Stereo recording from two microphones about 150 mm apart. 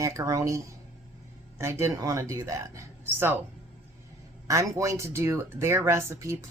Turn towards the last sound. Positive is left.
turn(degrees=-20)  # may be behind; listen again after turning